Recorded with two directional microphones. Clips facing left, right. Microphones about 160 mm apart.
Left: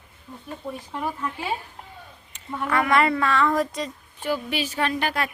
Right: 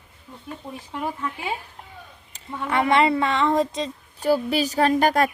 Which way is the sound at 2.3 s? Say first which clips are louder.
Even; 25° right (ahead or behind).